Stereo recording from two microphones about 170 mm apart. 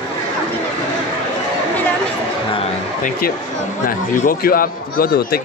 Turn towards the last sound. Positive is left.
turn(degrees=60)  # may be behind; listen again after turning